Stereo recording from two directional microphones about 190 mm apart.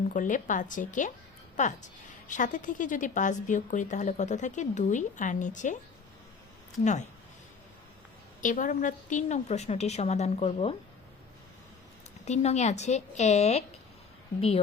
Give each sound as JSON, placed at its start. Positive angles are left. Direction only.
{"t": 0.1, "sound": "a woman's voice", "side_deg": 45}
{"t": 8.4, "sound": "a woman's voice", "side_deg": 45}
{"t": 12.2, "sound": "a woman's voice", "side_deg": 35}